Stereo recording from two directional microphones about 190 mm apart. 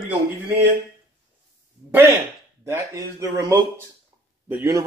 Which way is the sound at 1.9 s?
10° right (ahead or behind).